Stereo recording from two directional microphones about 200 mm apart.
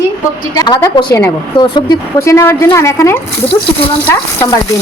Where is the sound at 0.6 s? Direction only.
20° left (ahead or behind).